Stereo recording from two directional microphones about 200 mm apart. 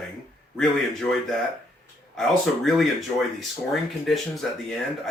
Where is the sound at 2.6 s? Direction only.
Centre (ahead or behind).